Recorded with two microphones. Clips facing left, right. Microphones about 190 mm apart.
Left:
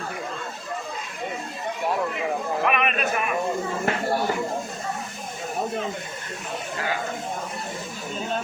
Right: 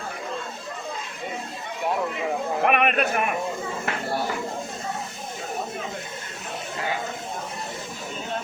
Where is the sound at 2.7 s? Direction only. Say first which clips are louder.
Right 4 dB; 60° right (ahead or behind).